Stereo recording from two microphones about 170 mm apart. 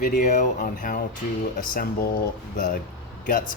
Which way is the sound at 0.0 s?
50° left (ahead or behind).